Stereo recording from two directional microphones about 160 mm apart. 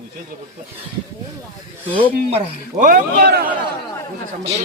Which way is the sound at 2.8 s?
60° right (ahead or behind).